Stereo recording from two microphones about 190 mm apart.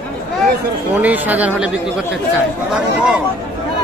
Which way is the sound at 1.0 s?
10° right (ahead or behind).